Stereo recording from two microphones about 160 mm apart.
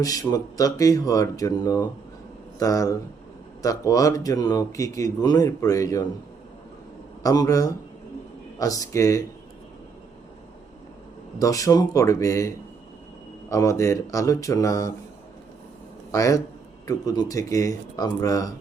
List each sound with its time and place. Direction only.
0.0 s a man's voice: 20° left (ahead or behind)
7.2 s a man's voice: 20° left (ahead or behind)
11.3 s a man's voice: 20° left (ahead or behind)
16.1 s a man's voice: 20° left (ahead or behind)